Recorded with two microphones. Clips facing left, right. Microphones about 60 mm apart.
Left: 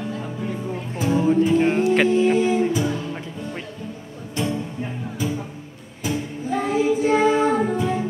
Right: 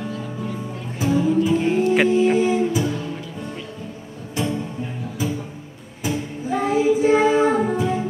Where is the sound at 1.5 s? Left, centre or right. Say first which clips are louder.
Left 1 dB; left.